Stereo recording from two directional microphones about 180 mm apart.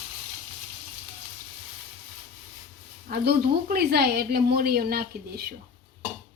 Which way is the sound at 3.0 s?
60° right (ahead or behind).